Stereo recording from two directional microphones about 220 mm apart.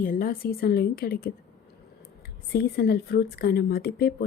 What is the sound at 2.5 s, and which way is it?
A woman's voice, 45° left (ahead or behind).